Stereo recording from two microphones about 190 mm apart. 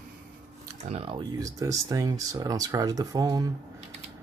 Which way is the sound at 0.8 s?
30° right (ahead or behind).